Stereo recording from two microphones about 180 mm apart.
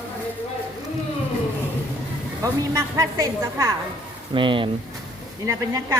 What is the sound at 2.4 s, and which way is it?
A woman's voice, 15° right (ahead or behind).